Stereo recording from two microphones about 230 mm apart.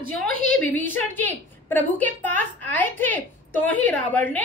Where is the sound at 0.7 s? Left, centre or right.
Centre.